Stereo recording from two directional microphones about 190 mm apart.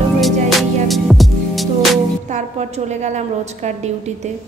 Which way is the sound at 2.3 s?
35° right (ahead or behind).